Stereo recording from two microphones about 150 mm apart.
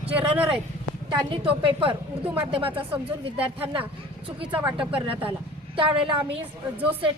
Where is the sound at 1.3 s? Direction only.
35° right (ahead or behind).